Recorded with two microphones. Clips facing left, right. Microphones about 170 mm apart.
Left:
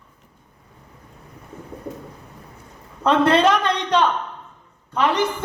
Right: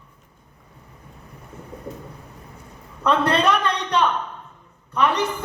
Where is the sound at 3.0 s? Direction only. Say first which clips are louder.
Left 4 dB; 25° left (ahead or behind).